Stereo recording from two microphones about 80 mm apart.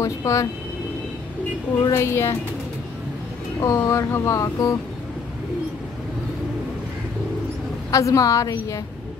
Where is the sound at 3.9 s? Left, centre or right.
Left.